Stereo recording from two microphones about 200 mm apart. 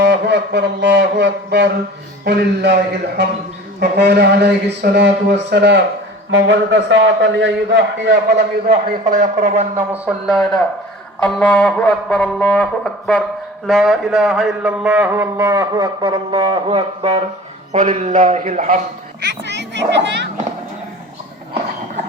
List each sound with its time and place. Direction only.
0.0 s a sound: 60° right (ahead or behind)
2.2 s a man's voice: 55° right (ahead or behind)
3.8 s a man's voice: 55° right (ahead or behind); by 9.6 s 35° right (ahead or behind)
9.7 s speech: 5° right (ahead or behind)
11.2 s brass instrument: 5° left (ahead or behind)
13.7 s a man's voice: centre (ahead or behind); by 17.2 s 30° right (ahead or behind)
17.7 s a man's voice: 40° right (ahead or behind)
19.2 s a man's voice: 60° right (ahead or behind)